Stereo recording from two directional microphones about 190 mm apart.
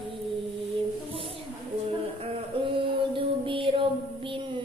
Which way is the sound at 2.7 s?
25° right (ahead or behind).